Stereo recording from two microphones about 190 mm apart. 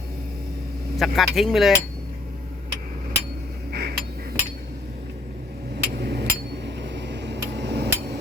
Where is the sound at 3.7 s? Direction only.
55° right (ahead or behind).